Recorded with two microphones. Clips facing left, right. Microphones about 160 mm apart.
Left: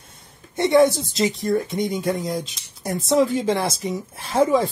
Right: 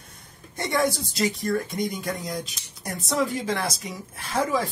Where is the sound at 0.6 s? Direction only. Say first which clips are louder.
Left 9 dB; 25° left (ahead or behind).